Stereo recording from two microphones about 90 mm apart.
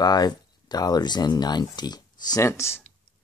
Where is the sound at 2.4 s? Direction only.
30° left (ahead or behind).